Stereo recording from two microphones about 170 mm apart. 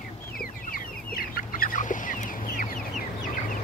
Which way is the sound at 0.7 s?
60° left (ahead or behind).